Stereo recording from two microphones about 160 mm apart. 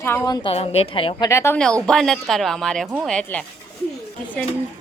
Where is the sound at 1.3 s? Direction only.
20° left (ahead or behind).